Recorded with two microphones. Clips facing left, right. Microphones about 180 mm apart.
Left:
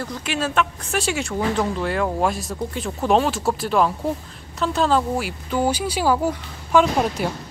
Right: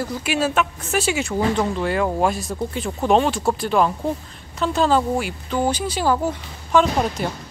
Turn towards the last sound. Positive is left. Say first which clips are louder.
# even
turn(degrees=5)  # may be behind; listen again after turning